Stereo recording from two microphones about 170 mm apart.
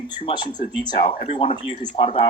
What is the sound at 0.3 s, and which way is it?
Speech, 30° left (ahead or behind).